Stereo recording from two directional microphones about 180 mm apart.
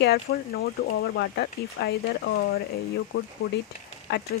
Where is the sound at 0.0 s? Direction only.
65° left (ahead or behind).